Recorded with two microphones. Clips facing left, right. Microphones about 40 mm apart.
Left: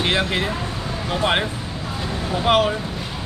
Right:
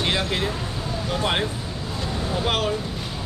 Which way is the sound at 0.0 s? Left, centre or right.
Centre.